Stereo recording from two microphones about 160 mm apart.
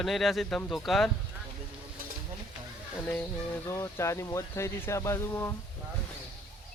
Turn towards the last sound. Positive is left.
turn(degrees=15)  # may be behind; listen again after turning